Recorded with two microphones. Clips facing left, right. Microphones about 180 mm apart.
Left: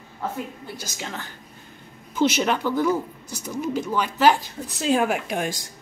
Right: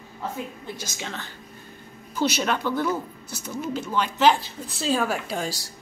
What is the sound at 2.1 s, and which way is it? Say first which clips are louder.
A woman's voice: left 3 dB; 15° left (ahead or behind).